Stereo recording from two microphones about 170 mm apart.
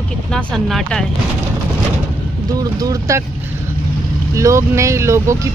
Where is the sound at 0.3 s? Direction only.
Centre (ahead or behind).